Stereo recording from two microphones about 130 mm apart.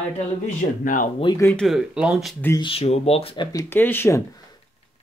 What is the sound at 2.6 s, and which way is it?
Speech, 50° left (ahead or behind).